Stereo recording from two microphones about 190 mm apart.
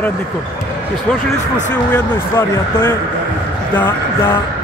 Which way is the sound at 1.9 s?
10° left (ahead or behind).